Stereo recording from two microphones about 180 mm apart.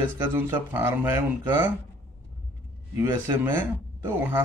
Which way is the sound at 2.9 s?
15° right (ahead or behind).